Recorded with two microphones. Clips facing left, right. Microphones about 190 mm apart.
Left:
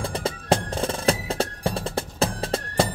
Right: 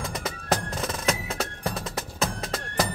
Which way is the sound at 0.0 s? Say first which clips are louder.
Left 5 dB; 30° left (ahead or behind).